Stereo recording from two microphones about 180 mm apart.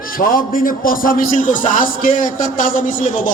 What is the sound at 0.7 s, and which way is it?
A man's voice, 50° left (ahead or behind).